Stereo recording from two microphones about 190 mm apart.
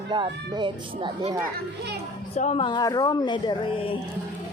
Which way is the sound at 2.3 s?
30° left (ahead or behind).